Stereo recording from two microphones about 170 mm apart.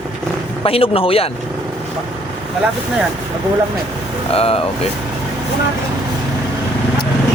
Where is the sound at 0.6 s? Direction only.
35° left (ahead or behind).